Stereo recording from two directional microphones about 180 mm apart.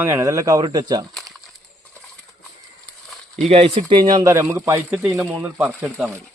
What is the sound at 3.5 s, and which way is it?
Speech, 35° right (ahead or behind).